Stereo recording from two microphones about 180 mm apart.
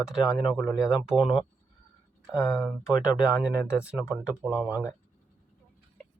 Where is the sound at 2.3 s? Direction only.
20° left (ahead or behind).